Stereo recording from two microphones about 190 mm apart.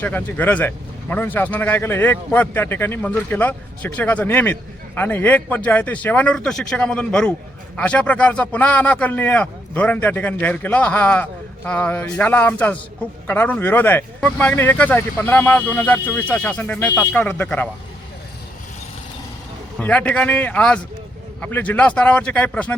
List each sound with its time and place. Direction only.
0.0 s speech: 10° left (ahead or behind)
19.8 s speech: 10° left (ahead or behind)